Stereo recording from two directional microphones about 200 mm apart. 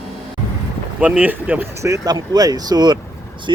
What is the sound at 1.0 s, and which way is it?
Speech, 10° right (ahead or behind).